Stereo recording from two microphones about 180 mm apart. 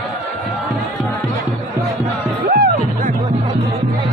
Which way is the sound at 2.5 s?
50° right (ahead or behind).